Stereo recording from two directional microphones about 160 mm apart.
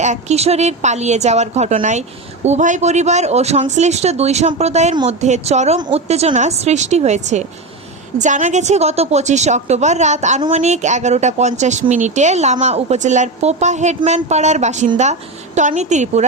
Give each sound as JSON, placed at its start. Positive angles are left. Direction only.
{"t": 0.0, "sound": "a woman's voice", "side_deg": -45}